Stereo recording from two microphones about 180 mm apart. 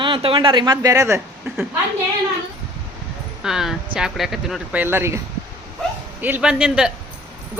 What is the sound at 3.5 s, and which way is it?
Speech, centre (ahead or behind).